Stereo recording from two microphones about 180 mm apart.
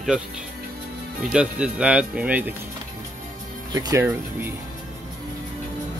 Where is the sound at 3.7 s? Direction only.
20° right (ahead or behind).